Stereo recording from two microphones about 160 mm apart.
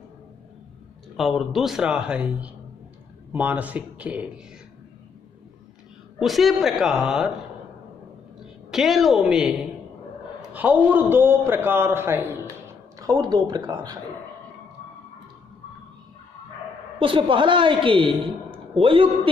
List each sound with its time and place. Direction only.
1.1 s a man's voice: centre (ahead or behind)
6.1 s speech: centre (ahead or behind)
8.6 s a man's voice: centre (ahead or behind); by 13.9 s 25° right (ahead or behind)
17.0 s speech: 30° right (ahead or behind)